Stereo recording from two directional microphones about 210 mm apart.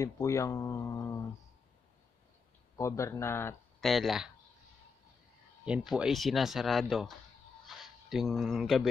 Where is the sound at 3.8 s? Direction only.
Centre (ahead or behind).